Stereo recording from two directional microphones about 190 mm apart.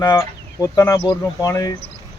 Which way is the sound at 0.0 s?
20° left (ahead or behind).